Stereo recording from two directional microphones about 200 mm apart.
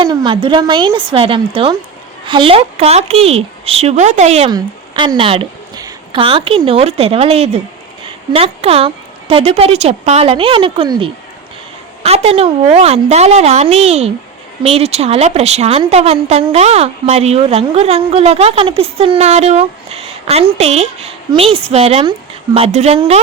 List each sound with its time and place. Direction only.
0.0 s a woman's voice: 20° right (ahead or behind)